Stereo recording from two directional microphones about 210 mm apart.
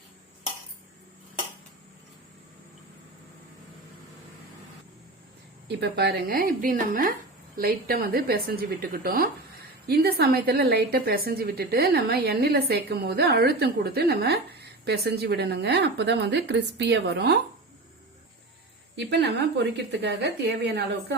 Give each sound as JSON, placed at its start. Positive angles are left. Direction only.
{"t": 5.6, "sound": "a woman's voice", "side_deg": -55}
{"t": 19.2, "sound": "a woman's voice", "side_deg": -50}